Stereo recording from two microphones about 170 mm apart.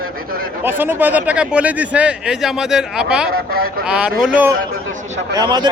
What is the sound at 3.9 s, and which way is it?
Speech, 5° right (ahead or behind).